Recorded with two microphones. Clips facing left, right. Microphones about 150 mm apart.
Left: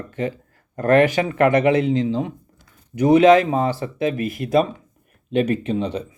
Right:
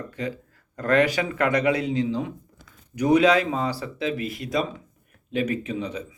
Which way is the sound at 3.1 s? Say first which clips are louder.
Left 6 dB; 45° left (ahead or behind).